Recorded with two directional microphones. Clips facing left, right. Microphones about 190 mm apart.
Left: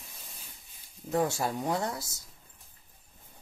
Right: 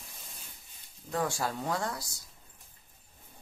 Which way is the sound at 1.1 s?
20° left (ahead or behind).